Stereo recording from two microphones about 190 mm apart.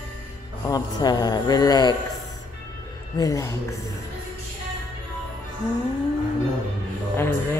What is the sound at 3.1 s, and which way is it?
Speech, 15° left (ahead or behind).